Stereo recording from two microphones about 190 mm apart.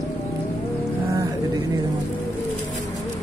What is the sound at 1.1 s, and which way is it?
Music, 15° right (ahead or behind).